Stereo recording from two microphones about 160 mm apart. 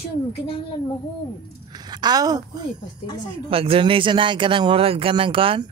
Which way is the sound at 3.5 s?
35° right (ahead or behind).